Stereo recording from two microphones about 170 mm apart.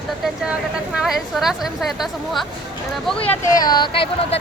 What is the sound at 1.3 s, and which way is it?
Speech, centre (ahead or behind).